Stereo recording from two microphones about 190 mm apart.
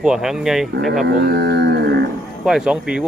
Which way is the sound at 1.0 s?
60° right (ahead or behind).